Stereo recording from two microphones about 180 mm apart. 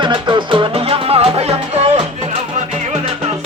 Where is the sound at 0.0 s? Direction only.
25° right (ahead or behind).